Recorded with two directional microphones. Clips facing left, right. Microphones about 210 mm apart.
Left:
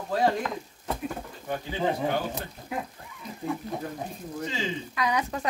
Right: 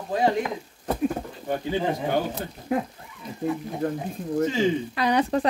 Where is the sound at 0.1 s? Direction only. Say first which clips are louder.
Right 2 dB; 15° right (ahead or behind).